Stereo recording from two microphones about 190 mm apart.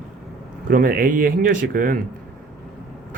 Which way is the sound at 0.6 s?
50° right (ahead or behind).